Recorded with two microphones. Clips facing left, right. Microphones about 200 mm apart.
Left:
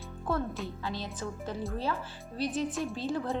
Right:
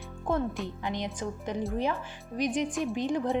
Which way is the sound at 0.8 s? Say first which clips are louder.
Right 3 dB; 20° right (ahead or behind).